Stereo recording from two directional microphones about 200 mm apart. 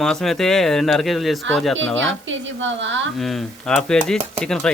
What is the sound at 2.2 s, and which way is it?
Speech, 70° right (ahead or behind).